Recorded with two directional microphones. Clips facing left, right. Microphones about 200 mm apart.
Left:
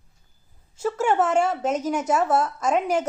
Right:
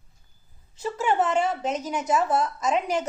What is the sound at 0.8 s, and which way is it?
Speech, 45° left (ahead or behind).